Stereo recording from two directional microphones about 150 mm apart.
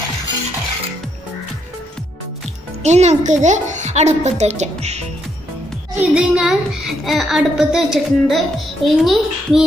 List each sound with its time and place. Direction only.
2.8 s a child's voice: 50° right (ahead or behind)
5.9 s a woman's voice: 5° right (ahead or behind)